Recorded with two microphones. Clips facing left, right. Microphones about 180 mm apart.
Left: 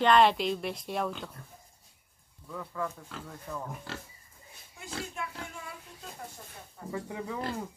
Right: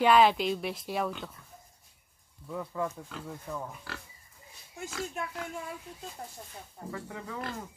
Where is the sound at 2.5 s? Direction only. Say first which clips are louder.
Right 2 dB; 20° right (ahead or behind).